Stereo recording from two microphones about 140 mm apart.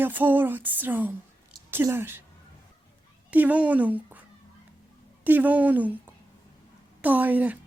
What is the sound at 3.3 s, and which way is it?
Speech, 10° right (ahead or behind).